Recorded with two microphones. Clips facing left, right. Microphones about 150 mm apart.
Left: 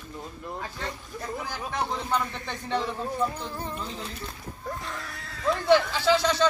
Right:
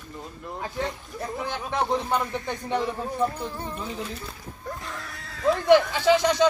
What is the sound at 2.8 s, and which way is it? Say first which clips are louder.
Speech: right 2 dB; centre (ahead or behind).